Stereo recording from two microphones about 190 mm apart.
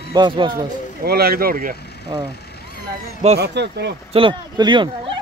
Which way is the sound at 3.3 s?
60° right (ahead or behind).